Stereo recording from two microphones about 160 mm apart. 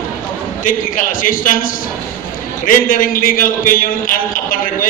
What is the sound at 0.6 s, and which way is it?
A man's voice, 55° left (ahead or behind).